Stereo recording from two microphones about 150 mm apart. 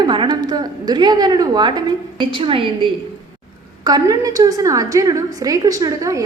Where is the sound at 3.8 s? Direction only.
25° right (ahead or behind).